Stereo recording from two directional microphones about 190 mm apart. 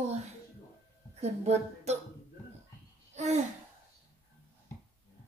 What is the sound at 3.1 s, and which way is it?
Babbling, 35° right (ahead or behind).